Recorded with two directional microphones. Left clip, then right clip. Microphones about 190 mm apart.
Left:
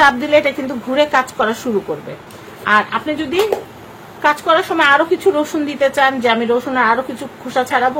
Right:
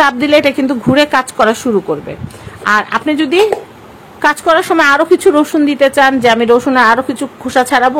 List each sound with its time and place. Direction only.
0.0 s a woman's voice: 50° right (ahead or behind)